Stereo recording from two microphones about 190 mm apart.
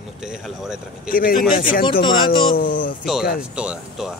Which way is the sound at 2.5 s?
50° left (ahead or behind).